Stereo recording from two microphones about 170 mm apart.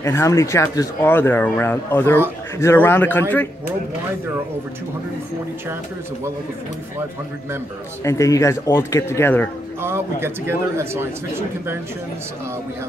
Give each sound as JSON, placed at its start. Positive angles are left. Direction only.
{"t": 0.0, "sound": "speech", "side_deg": 15}
{"t": 8.0, "sound": "speech", "side_deg": 20}
{"t": 9.8, "sound": "speech", "side_deg": -15}